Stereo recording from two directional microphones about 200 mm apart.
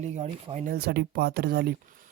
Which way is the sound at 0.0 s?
35° right (ahead or behind).